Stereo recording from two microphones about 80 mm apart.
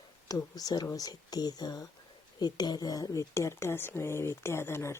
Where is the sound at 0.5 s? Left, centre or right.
Left.